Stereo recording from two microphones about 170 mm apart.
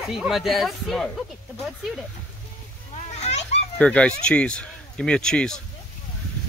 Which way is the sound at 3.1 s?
40° left (ahead or behind).